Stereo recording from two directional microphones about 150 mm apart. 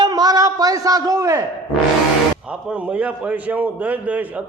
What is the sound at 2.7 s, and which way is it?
A man's voice, 10° right (ahead or behind).